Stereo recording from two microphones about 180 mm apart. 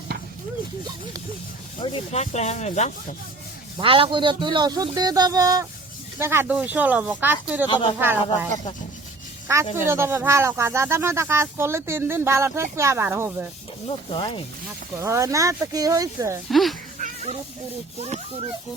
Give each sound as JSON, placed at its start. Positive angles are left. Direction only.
{"t": 1.8, "sound": "speech", "side_deg": 35}
{"t": 3.8, "sound": "speech", "side_deg": -30}
{"t": 7.7, "sound": "rub", "side_deg": 30}
{"t": 7.9, "sound": "speech", "side_deg": -10}
{"t": 9.7, "sound": "speech", "side_deg": -15}
{"t": 13.8, "sound": "rub", "side_deg": 30}
{"t": 14.9, "sound": "speech", "side_deg": -15}
{"t": 16.5, "sound": "speech", "side_deg": 0}
{"t": 17.0, "sound": "children playing", "side_deg": -40}
{"t": 18.0, "sound": "speech", "side_deg": -35}